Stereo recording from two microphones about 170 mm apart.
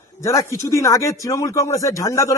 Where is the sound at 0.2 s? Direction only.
20° left (ahead or behind).